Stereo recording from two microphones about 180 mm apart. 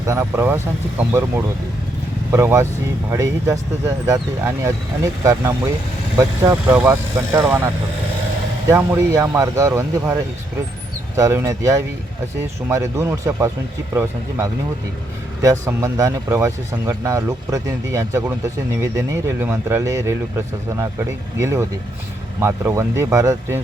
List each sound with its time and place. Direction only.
0.0 s speech: 15° right (ahead or behind)
8.7 s speech: 15° right (ahead or behind)
11.2 s speech: 15° right (ahead or behind)